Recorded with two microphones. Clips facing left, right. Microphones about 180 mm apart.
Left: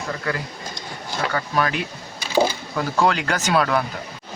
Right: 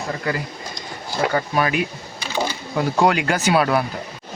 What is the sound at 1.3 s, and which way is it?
Speech, 15° right (ahead or behind).